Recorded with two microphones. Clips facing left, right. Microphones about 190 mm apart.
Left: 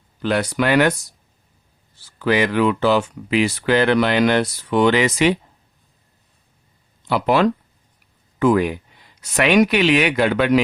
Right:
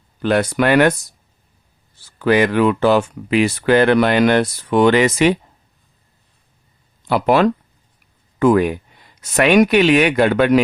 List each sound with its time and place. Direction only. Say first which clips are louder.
0.2 s speech: right 3 dB; 50° right (ahead or behind)
2.1 s speech: right 3 dB; 50° right (ahead or behind)
7.1 s speech: right 2 dB; 50° right (ahead or behind)